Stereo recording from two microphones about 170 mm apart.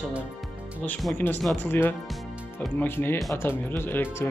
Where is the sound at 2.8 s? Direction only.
15° left (ahead or behind).